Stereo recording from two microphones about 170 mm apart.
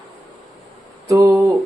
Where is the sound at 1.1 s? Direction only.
15° right (ahead or behind).